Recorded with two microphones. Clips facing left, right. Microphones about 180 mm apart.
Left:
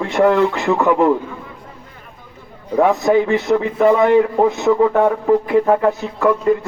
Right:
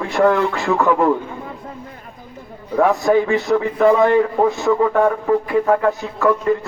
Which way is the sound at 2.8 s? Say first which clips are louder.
Left 1 dB; 20° left (ahead or behind).